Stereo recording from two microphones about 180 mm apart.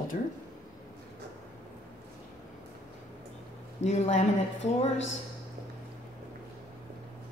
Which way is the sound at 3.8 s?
40° left (ahead or behind).